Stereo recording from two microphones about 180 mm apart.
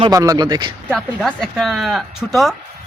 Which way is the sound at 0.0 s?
20° right (ahead or behind).